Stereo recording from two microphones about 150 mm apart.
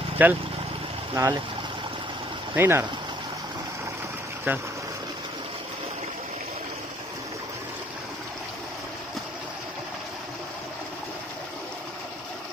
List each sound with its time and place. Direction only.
0.2 s speech: 10° right (ahead or behind)
1.1 s speech: 20° right (ahead or behind)
2.5 s speech: 15° right (ahead or behind)
4.5 s speech: 15° right (ahead or behind)